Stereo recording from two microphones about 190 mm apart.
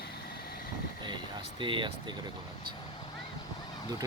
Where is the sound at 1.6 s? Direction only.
25° right (ahead or behind).